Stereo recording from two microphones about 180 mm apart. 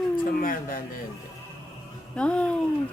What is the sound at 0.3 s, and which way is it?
Speech, 50° left (ahead or behind).